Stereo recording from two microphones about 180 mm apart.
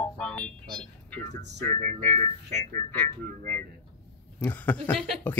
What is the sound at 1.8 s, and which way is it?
Speech, 45° right (ahead or behind).